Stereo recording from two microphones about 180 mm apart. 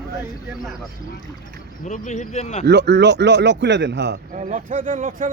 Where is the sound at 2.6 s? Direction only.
70° right (ahead or behind).